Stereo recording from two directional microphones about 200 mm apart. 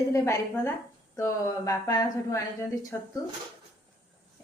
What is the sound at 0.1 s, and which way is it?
A woman's voice, 15° left (ahead or behind).